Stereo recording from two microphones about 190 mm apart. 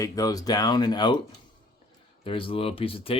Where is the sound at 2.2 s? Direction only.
30° left (ahead or behind).